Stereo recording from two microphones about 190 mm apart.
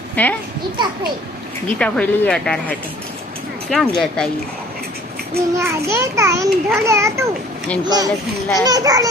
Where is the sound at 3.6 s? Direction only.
Centre (ahead or behind).